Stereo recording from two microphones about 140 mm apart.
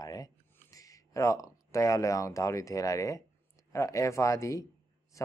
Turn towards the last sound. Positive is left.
turn(degrees=25)  # may be behind; listen again after turning